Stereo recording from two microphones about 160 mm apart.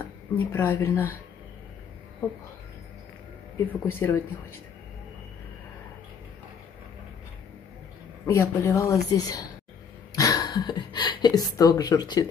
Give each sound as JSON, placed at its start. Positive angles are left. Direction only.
{"t": 0.5, "sound": "speech", "side_deg": 15}
{"t": 3.5, "sound": "speech", "side_deg": 15}
{"t": 8.3, "sound": "speech", "side_deg": 20}